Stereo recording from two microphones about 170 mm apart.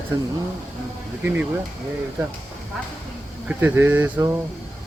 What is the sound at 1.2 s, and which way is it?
Speech, 10° right (ahead or behind).